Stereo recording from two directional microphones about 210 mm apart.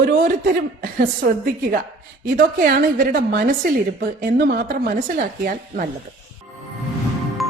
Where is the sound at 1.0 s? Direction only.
40° right (ahead or behind).